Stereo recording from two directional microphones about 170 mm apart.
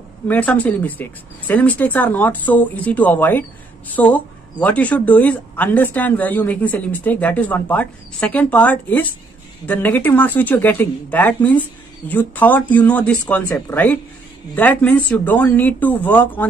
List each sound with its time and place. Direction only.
0.3 s speech: 10° left (ahead or behind)